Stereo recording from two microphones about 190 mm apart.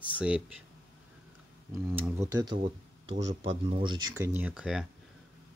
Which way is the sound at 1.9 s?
10° right (ahead or behind).